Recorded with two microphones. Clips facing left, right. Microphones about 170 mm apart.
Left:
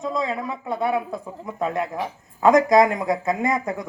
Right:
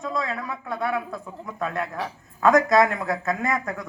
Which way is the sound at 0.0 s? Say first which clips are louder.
Left 3 dB; 20° left (ahead or behind).